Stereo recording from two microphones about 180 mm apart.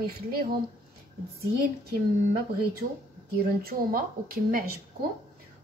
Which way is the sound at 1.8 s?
55° right (ahead or behind).